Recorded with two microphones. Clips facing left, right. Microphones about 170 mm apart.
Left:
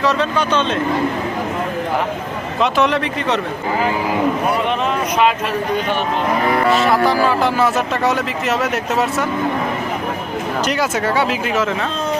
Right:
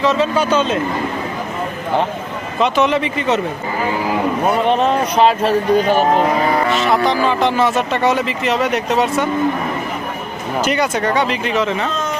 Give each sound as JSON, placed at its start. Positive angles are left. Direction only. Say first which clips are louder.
{"t": 0.0, "sound": "speech", "louder": "right 2 dB", "side_deg": 0}
{"t": 2.6, "sound": "speech", "louder": "right 1 dB", "side_deg": 0}
{"t": 4.6, "sound": "speech", "louder": "right 4 dB", "side_deg": -35}
{"t": 6.7, "sound": "speech", "louder": "left 1 dB", "side_deg": 5}
{"t": 10.7, "sound": "speech", "louder": "right 3 dB", "side_deg": 5}